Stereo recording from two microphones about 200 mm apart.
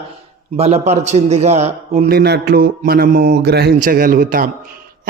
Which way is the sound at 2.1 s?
55° right (ahead or behind).